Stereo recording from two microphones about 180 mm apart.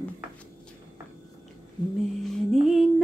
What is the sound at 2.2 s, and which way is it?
Music, centre (ahead or behind).